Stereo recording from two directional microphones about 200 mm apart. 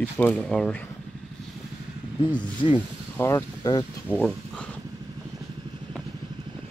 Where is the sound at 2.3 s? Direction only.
25° left (ahead or behind).